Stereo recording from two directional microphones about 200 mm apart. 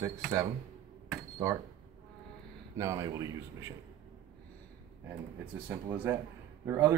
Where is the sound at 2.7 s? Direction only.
15° right (ahead or behind).